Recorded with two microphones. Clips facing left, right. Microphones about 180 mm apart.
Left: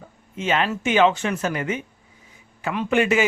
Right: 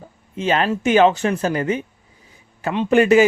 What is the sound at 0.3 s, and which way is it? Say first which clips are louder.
Speech: right 3 dB; 35° right (ahead or behind).